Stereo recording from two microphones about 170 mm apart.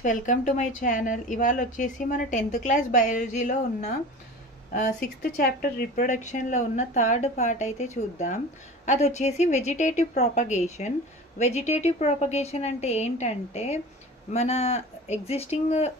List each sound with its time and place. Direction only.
0.0 s speech: 50° left (ahead or behind)
4.7 s speech: 70° left (ahead or behind)
5.9 s a woman's voice: 45° left (ahead or behind)